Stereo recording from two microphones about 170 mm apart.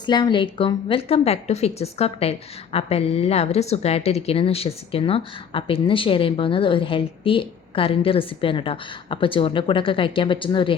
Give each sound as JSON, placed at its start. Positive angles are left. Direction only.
{"t": 0.0, "sound": "a woman's voice", "side_deg": 25}